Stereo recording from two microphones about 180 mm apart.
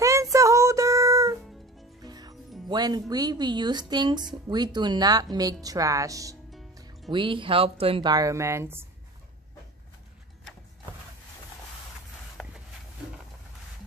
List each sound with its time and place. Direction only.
0.0 s music: 15° right (ahead or behind)
2.7 s speech: 25° right (ahead or behind)
12.4 s a sound: centre (ahead or behind)